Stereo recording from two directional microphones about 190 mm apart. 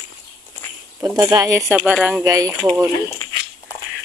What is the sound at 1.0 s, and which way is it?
Speech, 20° right (ahead or behind).